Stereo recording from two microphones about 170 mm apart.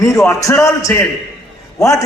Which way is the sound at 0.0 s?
20° left (ahead or behind).